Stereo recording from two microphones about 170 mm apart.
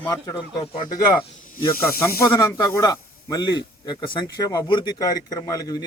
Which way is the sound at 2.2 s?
20° left (ahead or behind).